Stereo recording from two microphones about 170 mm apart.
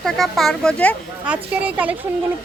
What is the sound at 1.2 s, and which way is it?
Speech, 10° right (ahead or behind).